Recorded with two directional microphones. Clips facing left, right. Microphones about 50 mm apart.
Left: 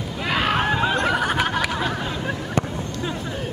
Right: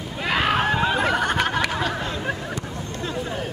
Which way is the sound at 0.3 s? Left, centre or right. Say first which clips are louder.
Even; centre.